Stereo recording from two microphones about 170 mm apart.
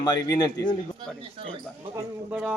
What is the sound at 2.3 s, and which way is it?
Speech, 5° right (ahead or behind).